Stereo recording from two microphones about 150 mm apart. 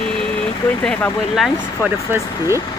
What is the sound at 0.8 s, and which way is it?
Speech, 5° left (ahead or behind).